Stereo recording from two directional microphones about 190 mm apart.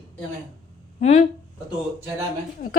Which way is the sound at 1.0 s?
35° left (ahead or behind).